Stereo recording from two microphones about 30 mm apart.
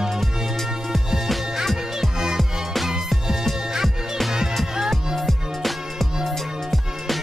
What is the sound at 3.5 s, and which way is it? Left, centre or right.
Music, centre.